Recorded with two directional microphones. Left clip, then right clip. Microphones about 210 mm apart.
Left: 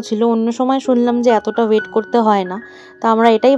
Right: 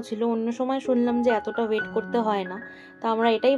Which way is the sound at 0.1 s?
40° left (ahead or behind).